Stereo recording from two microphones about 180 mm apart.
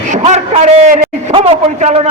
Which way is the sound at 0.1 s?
40° right (ahead or behind).